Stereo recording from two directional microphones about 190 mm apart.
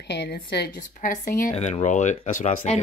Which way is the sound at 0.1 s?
65° left (ahead or behind).